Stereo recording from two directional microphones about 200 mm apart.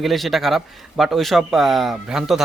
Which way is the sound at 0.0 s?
Centre (ahead or behind).